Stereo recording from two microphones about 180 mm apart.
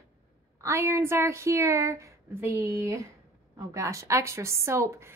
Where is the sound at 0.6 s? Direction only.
15° right (ahead or behind).